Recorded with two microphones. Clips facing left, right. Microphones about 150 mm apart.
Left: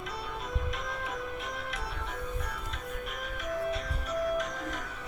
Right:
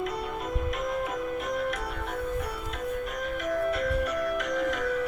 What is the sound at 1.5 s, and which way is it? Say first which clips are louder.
Music: right 9 dB; 50° right (ahead or behind).